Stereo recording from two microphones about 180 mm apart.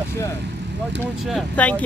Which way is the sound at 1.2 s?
Centre (ahead or behind).